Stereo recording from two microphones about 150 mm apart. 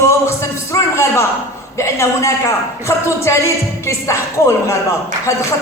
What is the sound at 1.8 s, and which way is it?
A man's voice, 20° left (ahead or behind).